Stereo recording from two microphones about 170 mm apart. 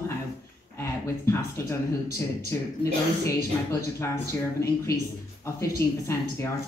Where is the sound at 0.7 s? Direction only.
15° left (ahead or behind).